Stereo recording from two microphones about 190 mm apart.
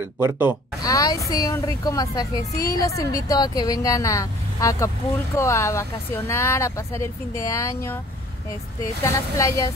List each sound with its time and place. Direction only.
0.0 s speech: 10° right (ahead or behind)
0.8 s a sound: 20° left (ahead or behind)
1.3 s a woman's voice: 15° left (ahead or behind)
9.0 s speech: 15° left (ahead or behind)